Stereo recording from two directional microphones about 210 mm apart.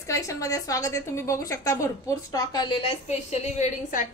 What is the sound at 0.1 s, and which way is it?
A woman's voice, 15° left (ahead or behind).